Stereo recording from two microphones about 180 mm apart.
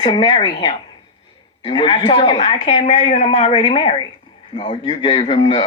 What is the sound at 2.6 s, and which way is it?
Speech, 40° left (ahead or behind).